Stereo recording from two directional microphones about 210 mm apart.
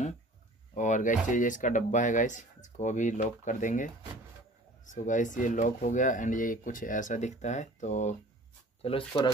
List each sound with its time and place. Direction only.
0.7 s speech: 35° left (ahead or behind)